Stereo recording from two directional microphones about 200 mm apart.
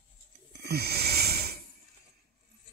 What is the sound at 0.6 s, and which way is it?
Wheeze, 55° right (ahead or behind).